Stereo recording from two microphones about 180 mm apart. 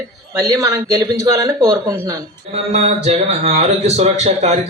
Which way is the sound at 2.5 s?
35° right (ahead or behind).